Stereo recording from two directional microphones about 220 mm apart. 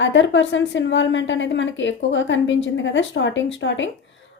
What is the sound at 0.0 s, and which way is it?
A woman's voice, 55° left (ahead or behind).